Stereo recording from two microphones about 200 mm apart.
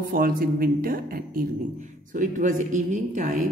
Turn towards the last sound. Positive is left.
turn(degrees=-40)  # may be behind; listen again after turning